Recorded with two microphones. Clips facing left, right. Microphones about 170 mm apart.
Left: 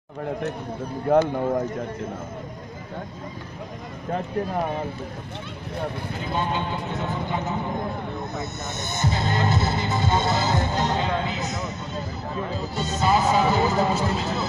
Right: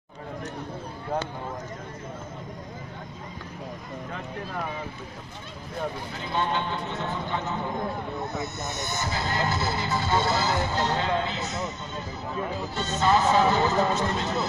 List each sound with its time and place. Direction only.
1.1 s speech: 60° left (ahead or behind)
6.3 s speech: 10° left (ahead or behind)
8.7 s speech: 20° left (ahead or behind)
12.7 s speech: 10° left (ahead or behind)